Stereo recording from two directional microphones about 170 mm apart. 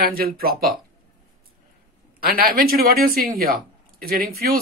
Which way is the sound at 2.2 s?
60° right (ahead or behind).